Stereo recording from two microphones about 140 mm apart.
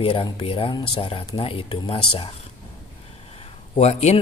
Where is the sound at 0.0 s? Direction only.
40° left (ahead or behind).